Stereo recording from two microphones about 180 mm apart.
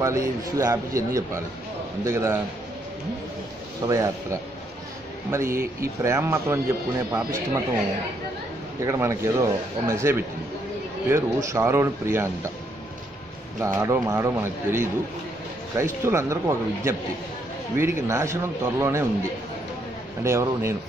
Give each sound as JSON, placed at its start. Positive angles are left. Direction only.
{"t": 0.0, "sound": "a man's voice", "side_deg": -15}
{"t": 3.8, "sound": "a man's voice", "side_deg": -15}
{"t": 8.8, "sound": "a man's voice", "side_deg": -15}
{"t": 13.7, "sound": "a man's voice", "side_deg": -15}
{"t": 20.2, "sound": "a man's voice", "side_deg": -15}